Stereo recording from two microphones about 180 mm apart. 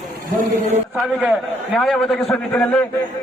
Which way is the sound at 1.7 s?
Centre (ahead or behind).